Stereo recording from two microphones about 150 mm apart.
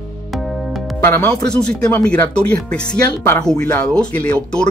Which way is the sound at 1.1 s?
5° left (ahead or behind).